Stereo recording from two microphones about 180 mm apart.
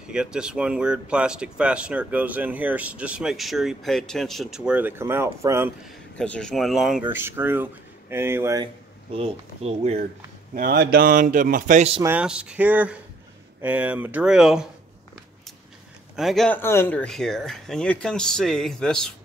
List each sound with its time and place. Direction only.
0.1 s speech: 5° right (ahead or behind)
6.1 s speech: 5° left (ahead or behind); by 8.6 s 15° right (ahead or behind)
9.1 s speech: 35° right (ahead or behind)
10.5 s speech: 60° right (ahead or behind)
12.0 s speech: 10° right (ahead or behind)
16.2 s speech: centre (ahead or behind)